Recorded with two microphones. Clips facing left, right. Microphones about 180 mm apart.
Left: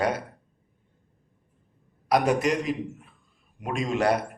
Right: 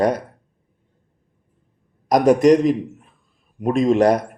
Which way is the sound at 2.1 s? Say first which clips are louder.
Right 10 dB; 40° right (ahead or behind).